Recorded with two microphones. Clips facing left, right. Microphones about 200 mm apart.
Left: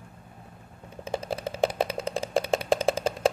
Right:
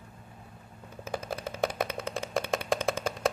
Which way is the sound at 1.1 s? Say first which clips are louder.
Left 4 dB; 30° left (ahead or behind).